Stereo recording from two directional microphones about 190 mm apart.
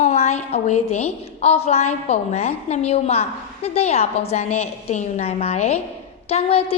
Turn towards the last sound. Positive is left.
turn(degrees=30)  # may be behind; listen again after turning